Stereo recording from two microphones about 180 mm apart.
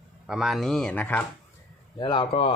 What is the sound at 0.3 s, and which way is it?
Speech, centre (ahead or behind).